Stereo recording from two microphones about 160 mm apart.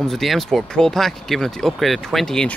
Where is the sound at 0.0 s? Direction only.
Centre (ahead or behind).